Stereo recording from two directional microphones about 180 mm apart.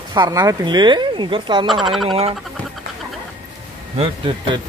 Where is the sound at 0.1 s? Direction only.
20° right (ahead or behind).